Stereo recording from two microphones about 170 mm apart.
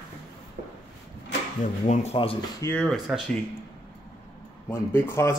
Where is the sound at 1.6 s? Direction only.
45° left (ahead or behind).